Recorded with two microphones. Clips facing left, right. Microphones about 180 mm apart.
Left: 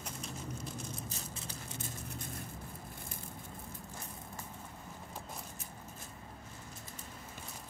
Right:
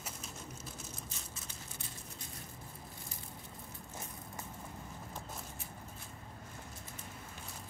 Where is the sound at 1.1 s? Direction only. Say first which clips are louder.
Left 5 dB; 35° left (ahead or behind).